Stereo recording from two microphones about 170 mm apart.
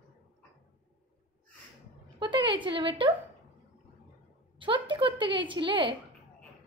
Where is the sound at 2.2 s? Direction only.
30° right (ahead or behind).